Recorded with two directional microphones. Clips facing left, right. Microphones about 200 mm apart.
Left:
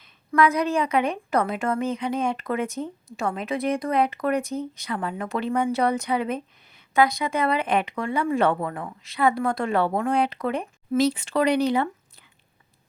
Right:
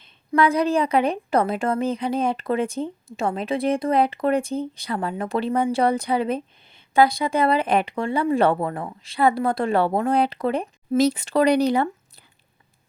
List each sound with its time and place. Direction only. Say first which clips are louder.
0.0 s a woman's voice: right 1 dB; 30° right (ahead or behind)